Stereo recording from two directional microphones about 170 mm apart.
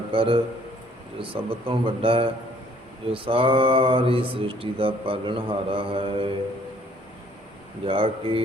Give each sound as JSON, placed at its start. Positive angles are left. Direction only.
{"t": 0.1, "sound": "speech", "side_deg": -30}
{"t": 7.9, "sound": "speech", "side_deg": -35}